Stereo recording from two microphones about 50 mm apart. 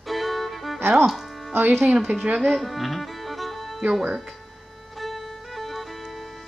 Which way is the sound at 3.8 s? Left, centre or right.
Centre.